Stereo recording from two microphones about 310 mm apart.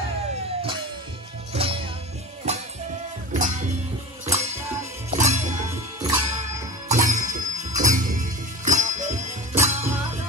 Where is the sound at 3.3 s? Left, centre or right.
Right.